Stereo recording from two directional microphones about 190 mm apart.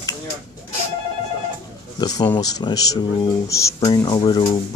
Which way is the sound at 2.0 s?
20° left (ahead or behind).